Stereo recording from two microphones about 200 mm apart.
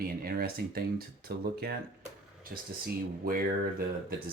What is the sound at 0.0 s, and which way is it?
Speech, 50° right (ahead or behind).